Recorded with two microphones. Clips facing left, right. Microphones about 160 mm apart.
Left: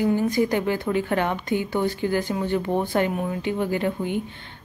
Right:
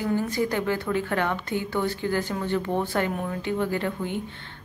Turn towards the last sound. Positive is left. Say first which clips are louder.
# left 3 dB
turn(degrees=15)  # may be behind; listen again after turning